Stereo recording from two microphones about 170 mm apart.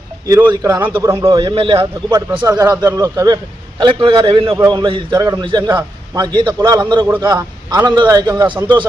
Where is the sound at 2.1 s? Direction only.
20° right (ahead or behind).